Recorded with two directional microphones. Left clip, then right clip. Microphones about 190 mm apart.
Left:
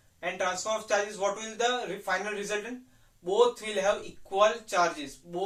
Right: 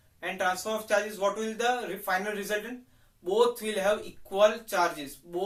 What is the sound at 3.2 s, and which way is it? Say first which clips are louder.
Speech: even; 15° right (ahead or behind).